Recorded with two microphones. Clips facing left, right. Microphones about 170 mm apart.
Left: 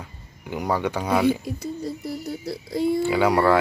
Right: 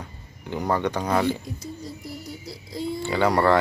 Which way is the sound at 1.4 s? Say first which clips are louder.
Left 6 dB; 60° left (ahead or behind).